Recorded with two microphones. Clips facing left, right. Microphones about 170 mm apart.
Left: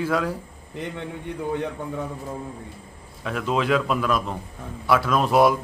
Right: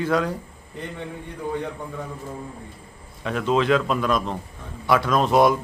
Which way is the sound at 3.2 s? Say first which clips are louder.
Right 3 dB; 5° left (ahead or behind).